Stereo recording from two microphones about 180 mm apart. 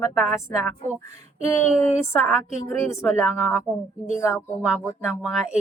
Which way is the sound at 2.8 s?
15° left (ahead or behind).